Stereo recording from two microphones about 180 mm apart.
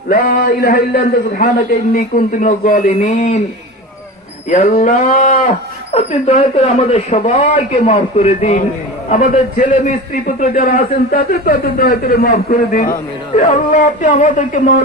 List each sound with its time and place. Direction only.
0.1 s a man's voice: 55° left (ahead or behind); by 3.4 s 40° left (ahead or behind)
4.4 s a man's voice: 40° left (ahead or behind)